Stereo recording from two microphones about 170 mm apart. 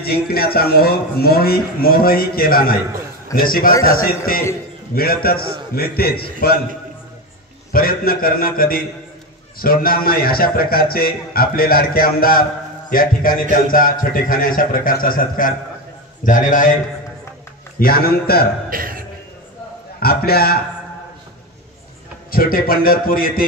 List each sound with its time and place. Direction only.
0.0 s a man's voice: 65° left (ahead or behind)
4.9 s a man's voice: 60° left (ahead or behind)
7.7 s a man's voice: 60° left (ahead or behind)
17.7 s a man's voice: 60° left (ahead or behind)
18.7 s a sound: 55° right (ahead or behind)
20.0 s a man's voice: 65° left (ahead or behind)
22.3 s a man's voice: 60° left (ahead or behind)